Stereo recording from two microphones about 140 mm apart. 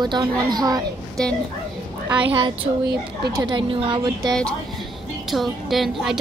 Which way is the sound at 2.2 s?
40° right (ahead or behind).